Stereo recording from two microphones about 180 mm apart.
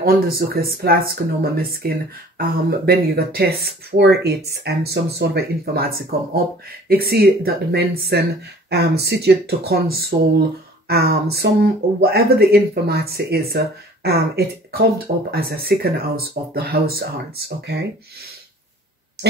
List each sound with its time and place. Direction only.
0.0 s speech: 60° right (ahead or behind)